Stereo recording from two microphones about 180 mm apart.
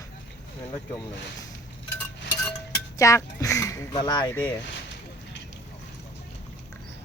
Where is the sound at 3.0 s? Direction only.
15° left (ahead or behind).